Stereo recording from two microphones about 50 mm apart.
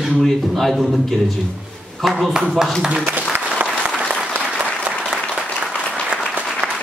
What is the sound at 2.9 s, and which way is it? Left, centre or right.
Applause, right.